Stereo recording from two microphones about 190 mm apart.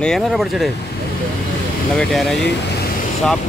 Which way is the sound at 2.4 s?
60° left (ahead or behind).